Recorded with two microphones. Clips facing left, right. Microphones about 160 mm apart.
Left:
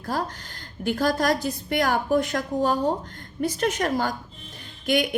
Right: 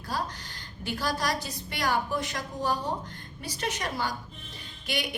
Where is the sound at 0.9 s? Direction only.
50° left (ahead or behind).